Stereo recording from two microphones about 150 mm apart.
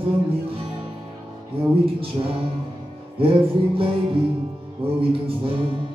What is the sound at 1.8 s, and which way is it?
Music, 40° right (ahead or behind).